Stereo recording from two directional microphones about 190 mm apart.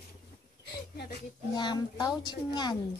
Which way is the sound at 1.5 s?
20° left (ahead or behind).